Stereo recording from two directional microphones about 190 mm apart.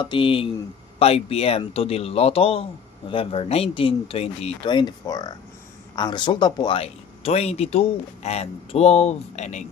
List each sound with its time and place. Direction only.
0.0 s speech: 25° left (ahead or behind)